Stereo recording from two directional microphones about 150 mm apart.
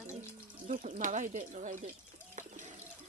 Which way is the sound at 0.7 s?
60° right (ahead or behind).